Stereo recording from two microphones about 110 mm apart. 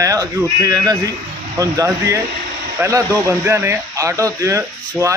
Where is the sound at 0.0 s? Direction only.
30° right (ahead or behind).